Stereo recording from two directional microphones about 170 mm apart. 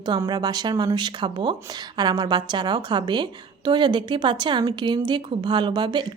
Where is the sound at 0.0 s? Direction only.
25° right (ahead or behind).